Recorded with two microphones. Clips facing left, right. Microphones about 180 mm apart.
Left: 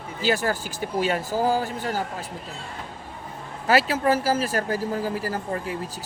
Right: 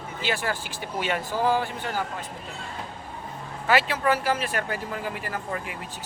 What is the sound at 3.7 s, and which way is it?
A man's voice, 40° left (ahead or behind).